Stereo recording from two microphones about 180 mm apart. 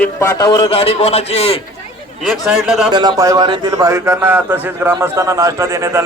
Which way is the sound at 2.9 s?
20° right (ahead or behind).